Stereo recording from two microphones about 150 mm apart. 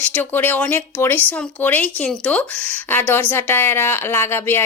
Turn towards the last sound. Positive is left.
turn(degrees=15)  # may be behind; listen again after turning